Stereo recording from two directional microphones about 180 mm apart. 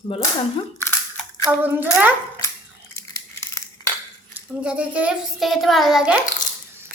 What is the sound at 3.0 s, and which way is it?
Crumpling, 15° left (ahead or behind).